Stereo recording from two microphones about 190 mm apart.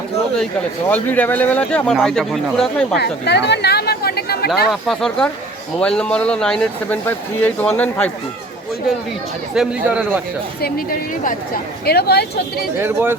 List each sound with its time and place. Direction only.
0.9 s speech: 10° left (ahead or behind)
2.9 s speech: 60° left (ahead or behind)
4.7 s speech: centre (ahead or behind)
9.6 s a man's voice: 5° right (ahead or behind)
10.6 s speech: 45° left (ahead or behind)
12.8 s a man's voice: 10° right (ahead or behind)